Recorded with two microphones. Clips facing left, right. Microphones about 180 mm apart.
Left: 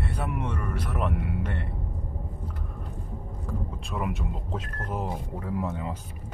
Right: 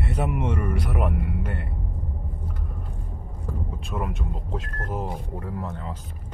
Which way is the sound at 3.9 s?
Centre (ahead or behind).